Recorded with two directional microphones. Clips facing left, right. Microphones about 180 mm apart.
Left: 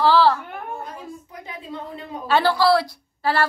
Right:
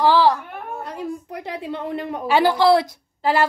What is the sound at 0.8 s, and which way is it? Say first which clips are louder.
A woman's voice: right 7 dB; 70° right (ahead or behind).